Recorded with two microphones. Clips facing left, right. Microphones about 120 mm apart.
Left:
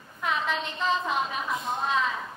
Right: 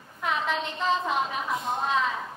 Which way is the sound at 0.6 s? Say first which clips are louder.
Right 1 dB; 35° right (ahead or behind).